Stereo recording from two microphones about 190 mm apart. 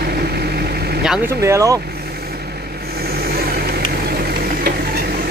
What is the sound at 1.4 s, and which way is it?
Speech, 15° right (ahead or behind).